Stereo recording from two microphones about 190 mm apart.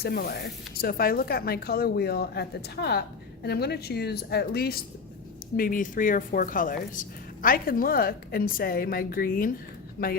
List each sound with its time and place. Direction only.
0.0 s a woman's voice: 55° left (ahead or behind)